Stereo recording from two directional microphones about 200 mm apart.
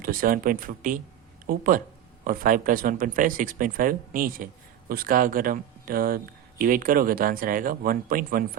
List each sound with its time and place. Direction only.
0.0 s speech: 45° right (ahead or behind)